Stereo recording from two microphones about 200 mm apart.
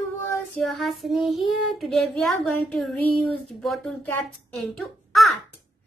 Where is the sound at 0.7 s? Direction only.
Centre (ahead or behind).